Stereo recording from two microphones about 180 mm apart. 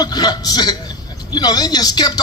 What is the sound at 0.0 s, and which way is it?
A man's voice, 20° left (ahead or behind).